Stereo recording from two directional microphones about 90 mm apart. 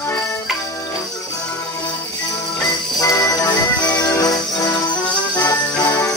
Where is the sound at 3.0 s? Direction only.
40° left (ahead or behind).